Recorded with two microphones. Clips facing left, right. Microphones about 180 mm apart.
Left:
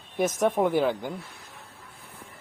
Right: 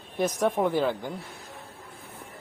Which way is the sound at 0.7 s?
15° left (ahead or behind).